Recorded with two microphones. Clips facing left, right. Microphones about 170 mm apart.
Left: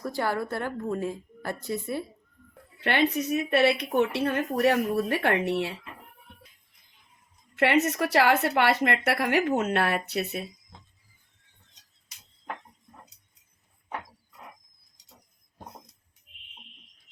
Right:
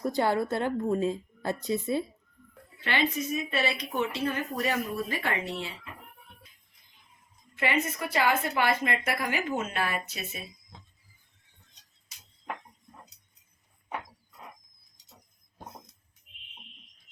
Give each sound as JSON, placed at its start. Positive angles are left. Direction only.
{"t": 0.0, "sound": "a woman's voice", "side_deg": -20}
{"t": 2.8, "sound": "speech", "side_deg": 60}
{"t": 7.5, "sound": "a woman's voice", "side_deg": 70}